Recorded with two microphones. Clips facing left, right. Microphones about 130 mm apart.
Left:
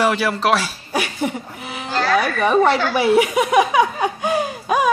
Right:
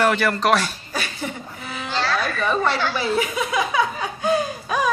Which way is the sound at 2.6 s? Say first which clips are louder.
Left 6 dB; 55° left (ahead or behind).